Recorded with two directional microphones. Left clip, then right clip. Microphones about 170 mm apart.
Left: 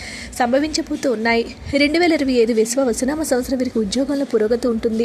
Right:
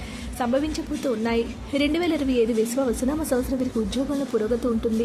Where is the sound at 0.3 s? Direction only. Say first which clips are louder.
Left 7 dB; 25° left (ahead or behind).